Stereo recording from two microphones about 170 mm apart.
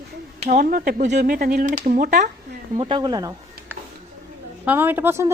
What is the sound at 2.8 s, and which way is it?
Speech, 30° right (ahead or behind).